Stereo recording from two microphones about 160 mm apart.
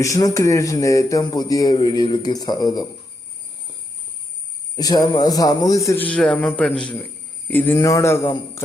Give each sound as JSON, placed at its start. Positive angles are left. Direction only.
{"t": 0.0, "sound": "speech", "side_deg": 20}
{"t": 4.8, "sound": "speech", "side_deg": 25}
{"t": 6.1, "sound": "a man's voice", "side_deg": 5}